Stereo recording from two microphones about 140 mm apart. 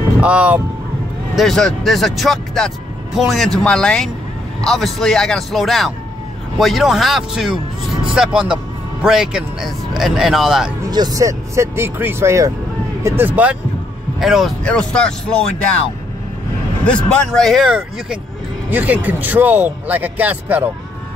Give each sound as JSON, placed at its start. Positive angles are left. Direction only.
{"t": 0.2, "sound": "speech", "side_deg": -10}
{"t": 1.3, "sound": "speech", "side_deg": 0}
{"t": 10.9, "sound": "speech", "side_deg": -30}
{"t": 14.2, "sound": "speech", "side_deg": 0}
{"t": 16.8, "sound": "speech", "side_deg": 5}